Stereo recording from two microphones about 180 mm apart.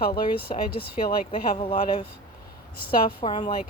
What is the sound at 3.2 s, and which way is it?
Speech, 30° left (ahead or behind).